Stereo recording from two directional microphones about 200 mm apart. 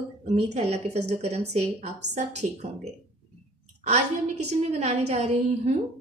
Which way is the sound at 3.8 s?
35° right (ahead or behind).